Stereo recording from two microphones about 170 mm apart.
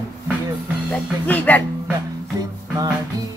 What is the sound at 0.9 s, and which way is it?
Speech, 10° left (ahead or behind).